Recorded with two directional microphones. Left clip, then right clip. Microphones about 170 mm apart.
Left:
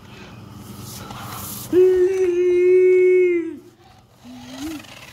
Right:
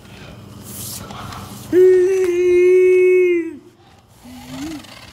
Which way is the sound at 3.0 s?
Centre (ahead or behind).